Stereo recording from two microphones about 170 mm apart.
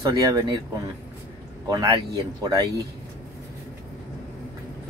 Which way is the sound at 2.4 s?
20° right (ahead or behind).